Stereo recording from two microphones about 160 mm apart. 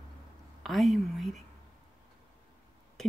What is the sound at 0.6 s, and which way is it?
Speech, centre (ahead or behind).